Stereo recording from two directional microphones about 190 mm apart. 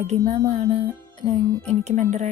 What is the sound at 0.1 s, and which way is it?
Music, 35° right (ahead or behind).